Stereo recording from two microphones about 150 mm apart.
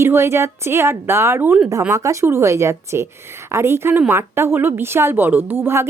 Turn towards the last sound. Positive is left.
turn(degrees=-15)  # may be behind; listen again after turning